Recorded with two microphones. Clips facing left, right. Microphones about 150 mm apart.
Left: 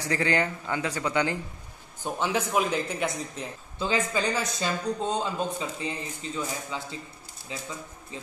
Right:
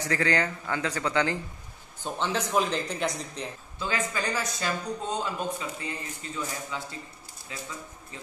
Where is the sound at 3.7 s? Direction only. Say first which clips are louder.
Left 4 dB; 20° left (ahead or behind).